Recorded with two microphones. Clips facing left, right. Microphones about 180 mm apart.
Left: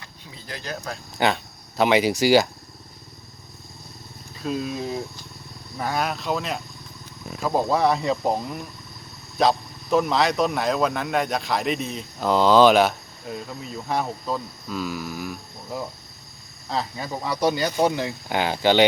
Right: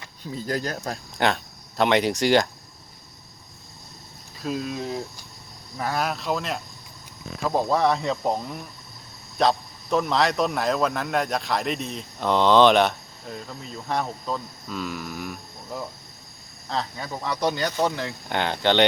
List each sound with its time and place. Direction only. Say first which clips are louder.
0.3 s speech: right 6 dB; 45° right (ahead or behind)
1.2 s speech: left 1 dB; centre (ahead or behind)
4.4 s speech: left 1 dB; centre (ahead or behind)